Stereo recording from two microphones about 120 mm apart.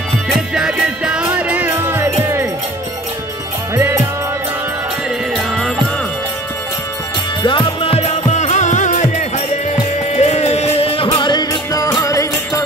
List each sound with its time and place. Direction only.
0.6 s music: 5° right (ahead or behind)
3.7 s music: 20° right (ahead or behind)
7.4 s music: 50° left (ahead or behind)
8.3 s music: 75° left (ahead or behind)
9.7 s music: 65° left (ahead or behind); by 12.6 s 25° left (ahead or behind)